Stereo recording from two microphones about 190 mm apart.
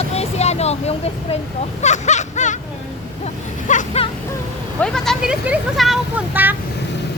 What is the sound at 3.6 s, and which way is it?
Speech, 35° left (ahead or behind).